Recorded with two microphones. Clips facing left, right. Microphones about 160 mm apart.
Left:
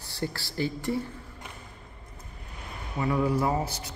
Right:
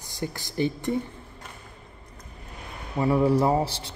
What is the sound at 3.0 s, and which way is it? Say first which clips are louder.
Speech: right 5 dB; 30° right (ahead or behind).